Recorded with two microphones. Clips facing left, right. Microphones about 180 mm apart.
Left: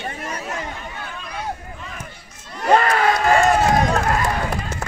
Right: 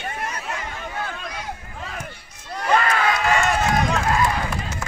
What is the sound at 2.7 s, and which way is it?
Run, 40° left (ahead or behind).